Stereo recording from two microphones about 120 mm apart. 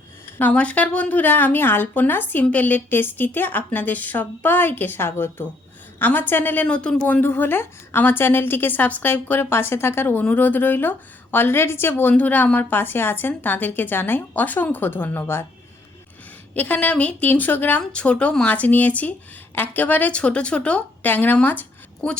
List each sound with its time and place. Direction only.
0.3 s a woman's voice: 10° left (ahead or behind)
16.6 s a woman's voice: 15° left (ahead or behind)